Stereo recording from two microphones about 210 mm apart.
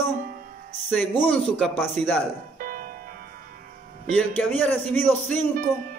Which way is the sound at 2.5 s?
40° right (ahead or behind).